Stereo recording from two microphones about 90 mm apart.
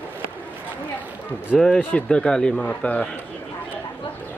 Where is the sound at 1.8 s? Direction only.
15° left (ahead or behind).